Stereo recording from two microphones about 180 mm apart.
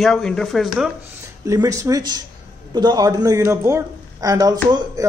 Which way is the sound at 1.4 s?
20° right (ahead or behind).